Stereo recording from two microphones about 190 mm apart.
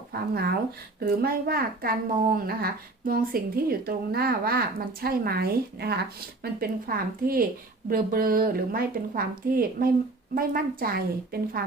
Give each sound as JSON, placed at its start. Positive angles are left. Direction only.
{"t": 0.1, "sound": "a woman's voice", "side_deg": -55}